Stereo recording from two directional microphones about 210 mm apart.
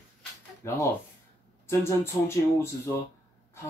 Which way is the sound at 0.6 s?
15° left (ahead or behind).